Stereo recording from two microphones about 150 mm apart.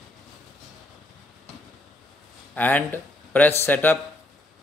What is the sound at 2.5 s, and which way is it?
Speech, 10° left (ahead or behind).